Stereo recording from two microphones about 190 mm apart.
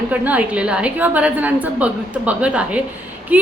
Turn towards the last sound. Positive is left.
turn(degrees=-10)  # may be behind; listen again after turning